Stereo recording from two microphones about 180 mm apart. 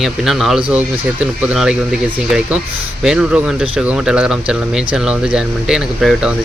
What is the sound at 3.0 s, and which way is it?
Speech, 5° right (ahead or behind).